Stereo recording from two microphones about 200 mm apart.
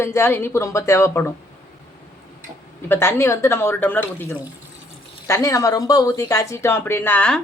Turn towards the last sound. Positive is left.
turn(degrees=10)  # may be behind; listen again after turning